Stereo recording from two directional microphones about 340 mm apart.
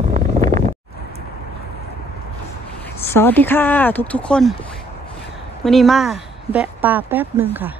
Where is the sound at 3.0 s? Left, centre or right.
Centre.